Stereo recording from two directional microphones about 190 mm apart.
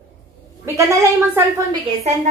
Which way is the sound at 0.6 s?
15° right (ahead or behind).